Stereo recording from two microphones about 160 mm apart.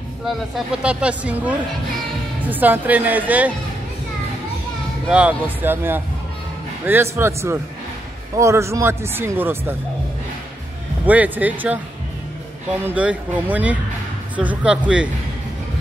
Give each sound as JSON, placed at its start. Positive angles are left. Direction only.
{"t": 0.8, "sound": "speech", "side_deg": -10}
{"t": 5.0, "sound": "speech", "side_deg": -5}
{"t": 11.1, "sound": "speech", "side_deg": -10}
{"t": 12.8, "sound": "speech", "side_deg": -10}